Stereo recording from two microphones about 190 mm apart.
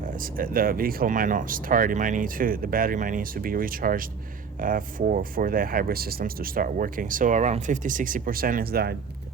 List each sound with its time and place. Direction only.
0.3 s speech: 50° right (ahead or behind)